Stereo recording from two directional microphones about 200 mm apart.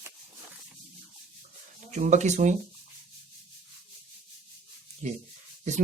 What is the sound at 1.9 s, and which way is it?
Speech, 35° right (ahead or behind).